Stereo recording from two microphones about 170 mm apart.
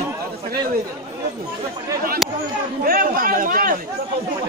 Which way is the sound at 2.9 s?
55° right (ahead or behind).